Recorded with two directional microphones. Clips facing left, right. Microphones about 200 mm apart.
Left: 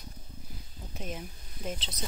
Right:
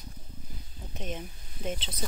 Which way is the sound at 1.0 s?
Centre (ahead or behind).